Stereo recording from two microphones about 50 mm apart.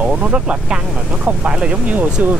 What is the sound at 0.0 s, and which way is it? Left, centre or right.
Speech, right.